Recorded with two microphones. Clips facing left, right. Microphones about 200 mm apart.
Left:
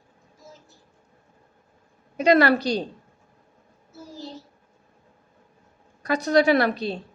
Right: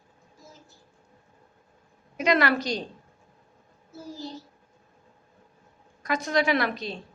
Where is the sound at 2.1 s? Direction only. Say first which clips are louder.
Left 5 dB; 35° left (ahead or behind).